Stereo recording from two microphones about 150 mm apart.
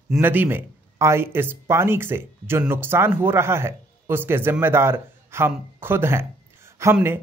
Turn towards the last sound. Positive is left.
turn(degrees=-15)  # may be behind; listen again after turning